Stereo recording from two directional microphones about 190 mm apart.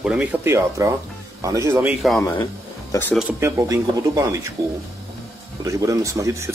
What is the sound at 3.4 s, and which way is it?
Speech, 15° right (ahead or behind).